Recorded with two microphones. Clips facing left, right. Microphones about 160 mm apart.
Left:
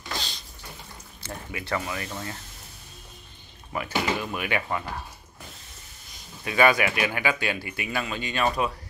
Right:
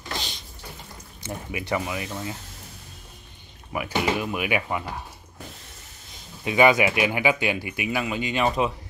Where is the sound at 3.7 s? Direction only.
15° right (ahead or behind).